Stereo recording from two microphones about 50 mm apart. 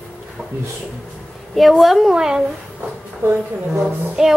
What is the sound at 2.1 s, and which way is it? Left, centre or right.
Speech, centre.